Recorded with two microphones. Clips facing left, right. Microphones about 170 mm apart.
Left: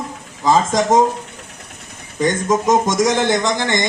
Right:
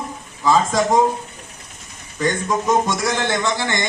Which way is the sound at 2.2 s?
20° left (ahead or behind).